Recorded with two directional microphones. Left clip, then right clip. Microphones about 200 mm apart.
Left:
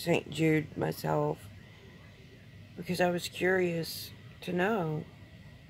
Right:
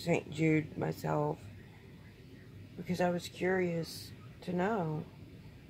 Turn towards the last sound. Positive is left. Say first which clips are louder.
# left 4 dB
turn(degrees=45)  # may be behind; listen again after turning